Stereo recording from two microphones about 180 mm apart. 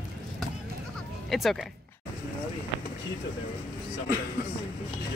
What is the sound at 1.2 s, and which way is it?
Speech, centre (ahead or behind).